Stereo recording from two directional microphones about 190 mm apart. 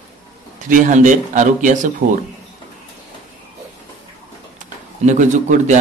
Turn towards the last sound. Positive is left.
turn(degrees=-40)  # may be behind; listen again after turning